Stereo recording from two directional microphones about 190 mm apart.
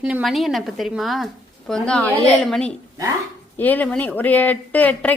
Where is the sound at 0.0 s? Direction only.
5° right (ahead or behind).